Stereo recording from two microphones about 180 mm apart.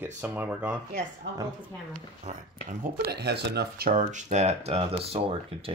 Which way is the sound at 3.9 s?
40° right (ahead or behind).